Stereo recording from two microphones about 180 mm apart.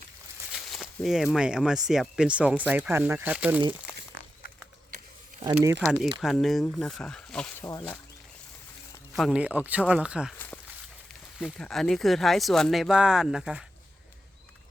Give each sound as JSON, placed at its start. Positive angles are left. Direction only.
{"t": 0.5, "sound": "speech", "side_deg": 0}
{"t": 5.4, "sound": "speech", "side_deg": -15}
{"t": 6.1, "sound": "speech", "side_deg": 0}
{"t": 7.6, "sound": "speech", "side_deg": 20}
{"t": 9.1, "sound": "speech", "side_deg": -5}
{"t": 11.3, "sound": "speech", "side_deg": 0}